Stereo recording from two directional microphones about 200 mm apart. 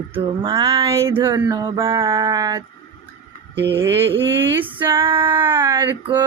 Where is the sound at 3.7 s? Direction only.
10° right (ahead or behind).